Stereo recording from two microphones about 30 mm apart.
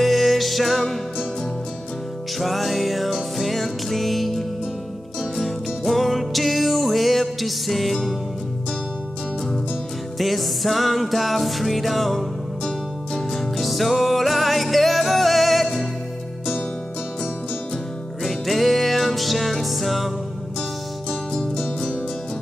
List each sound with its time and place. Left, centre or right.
0.0 s music: centre
2.3 s music: centre
10.1 s music: centre
13.3 s music: centre
18.2 s music: centre
21.1 s music: centre
21.5 s music: left